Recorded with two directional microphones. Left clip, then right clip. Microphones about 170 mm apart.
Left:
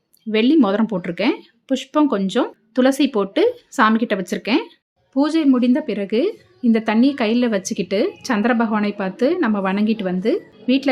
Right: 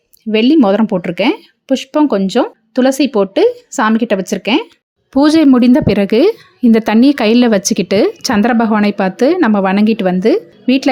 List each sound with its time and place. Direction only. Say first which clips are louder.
0.3 s speech: right 6 dB; 30° right (ahead or behind)
5.1 s a woman's voice: right 8 dB; 55° right (ahead or behind)